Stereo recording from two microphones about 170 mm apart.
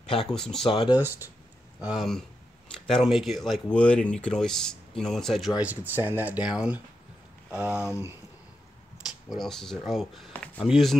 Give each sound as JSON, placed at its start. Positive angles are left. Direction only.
{"t": 0.3, "sound": "speech", "side_deg": 5}
{"t": 0.7, "sound": "speech", "side_deg": 30}
{"t": 0.9, "sound": "speech", "side_deg": -10}
{"t": 5.6, "sound": "speech", "side_deg": -10}
{"t": 9.3, "sound": "speech", "side_deg": 0}